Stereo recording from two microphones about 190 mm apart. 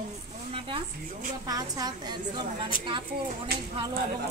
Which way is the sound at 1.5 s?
20° right (ahead or behind).